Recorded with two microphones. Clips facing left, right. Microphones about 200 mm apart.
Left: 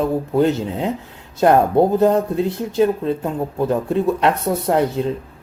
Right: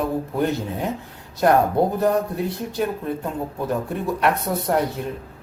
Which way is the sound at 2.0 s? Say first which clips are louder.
Left 5 dB; 25° left (ahead or behind).